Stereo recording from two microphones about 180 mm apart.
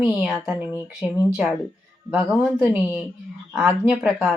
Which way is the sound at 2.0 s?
5° right (ahead or behind).